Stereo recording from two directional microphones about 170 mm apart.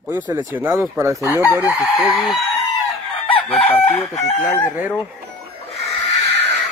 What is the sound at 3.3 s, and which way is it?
Chicken, 35° left (ahead or behind).